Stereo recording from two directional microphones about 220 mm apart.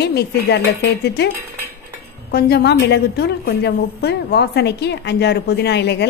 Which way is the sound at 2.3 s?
50° left (ahead or behind).